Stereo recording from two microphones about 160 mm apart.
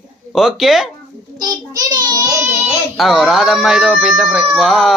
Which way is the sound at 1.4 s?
25° right (ahead or behind).